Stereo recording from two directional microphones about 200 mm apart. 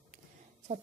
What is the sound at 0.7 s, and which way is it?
Speech, 35° right (ahead or behind).